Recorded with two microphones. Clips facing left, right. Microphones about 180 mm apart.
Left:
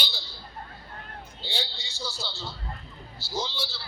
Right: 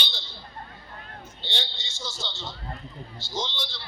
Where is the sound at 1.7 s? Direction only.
35° left (ahead or behind).